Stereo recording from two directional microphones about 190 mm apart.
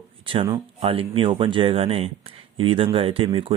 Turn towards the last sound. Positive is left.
turn(degrees=-25)  # may be behind; listen again after turning